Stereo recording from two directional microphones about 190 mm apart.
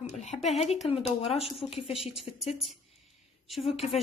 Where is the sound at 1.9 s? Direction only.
Centre (ahead or behind).